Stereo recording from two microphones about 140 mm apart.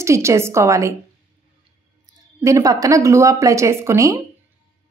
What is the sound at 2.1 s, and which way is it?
A woman's voice, 25° right (ahead or behind).